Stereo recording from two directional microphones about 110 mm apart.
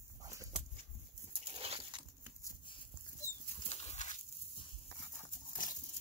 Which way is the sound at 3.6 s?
75° left (ahead or behind).